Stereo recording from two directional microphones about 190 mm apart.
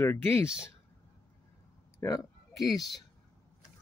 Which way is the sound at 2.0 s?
20° left (ahead or behind).